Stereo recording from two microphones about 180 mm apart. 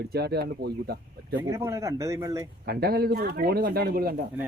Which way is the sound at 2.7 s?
60° right (ahead or behind).